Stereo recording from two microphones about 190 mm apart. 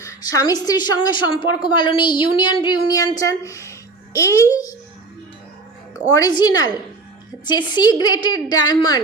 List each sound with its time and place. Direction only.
0.0 s a woman's voice: 20° left (ahead or behind)
5.9 s a woman's voice: 20° left (ahead or behind)